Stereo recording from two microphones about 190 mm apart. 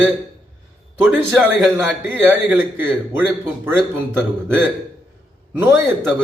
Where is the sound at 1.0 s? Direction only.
5° right (ahead or behind).